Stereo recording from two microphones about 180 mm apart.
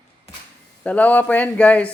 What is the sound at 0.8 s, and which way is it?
Speech, 10° left (ahead or behind).